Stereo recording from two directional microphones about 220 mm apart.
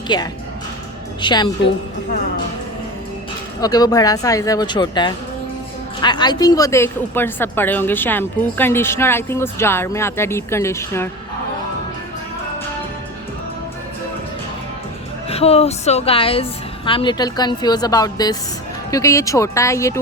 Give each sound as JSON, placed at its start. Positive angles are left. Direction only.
{"t": 0.1, "sound": "a woman's voice", "side_deg": 20}
{"t": 3.6, "sound": "a woman's voice", "side_deg": 15}
{"t": 15.3, "sound": "a woman's voice", "side_deg": 25}